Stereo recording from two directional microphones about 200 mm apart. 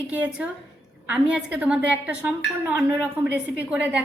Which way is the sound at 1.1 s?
5° right (ahead or behind).